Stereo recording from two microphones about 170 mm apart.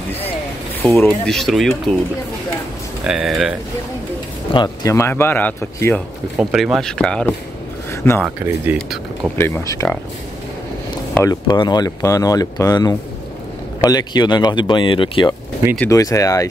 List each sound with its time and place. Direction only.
0.8 s speech: 10° left (ahead or behind)
3.0 s speech: 5° right (ahead or behind)
4.5 s speech: 25° left (ahead or behind)
4.9 s speech: 15° left (ahead or behind)
6.3 s speech: centre (ahead or behind)
7.9 s speech: 15° left (ahead or behind)
8.4 s speech: 10° right (ahead or behind)
8.7 s speech: centre (ahead or behind)
9.4 s speech: 15° left (ahead or behind)
11.2 s speech: 25° left (ahead or behind)
15.9 s speech: 20° left (ahead or behind)